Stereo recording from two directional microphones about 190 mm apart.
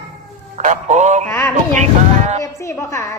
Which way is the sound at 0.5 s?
40° right (ahead or behind).